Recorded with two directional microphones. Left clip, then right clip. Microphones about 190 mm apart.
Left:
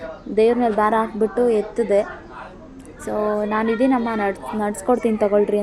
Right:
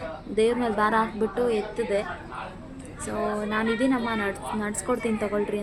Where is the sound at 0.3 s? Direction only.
Centre (ahead or behind).